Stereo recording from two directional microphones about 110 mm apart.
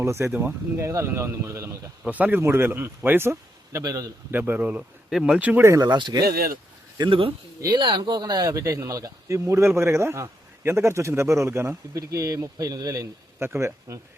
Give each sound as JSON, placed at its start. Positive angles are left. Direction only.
{"t": 0.0, "sound": "speech", "side_deg": -25}
{"t": 2.0, "sound": "speech", "side_deg": -15}
{"t": 4.3, "sound": "speech", "side_deg": -15}
{"t": 5.4, "sound": "speech", "side_deg": -15}
{"t": 5.6, "sound": "speech", "side_deg": -30}
{"t": 13.4, "sound": "speech", "side_deg": -20}